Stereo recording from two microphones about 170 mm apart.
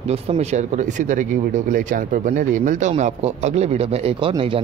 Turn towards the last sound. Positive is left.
turn(degrees=-30)  # may be behind; listen again after turning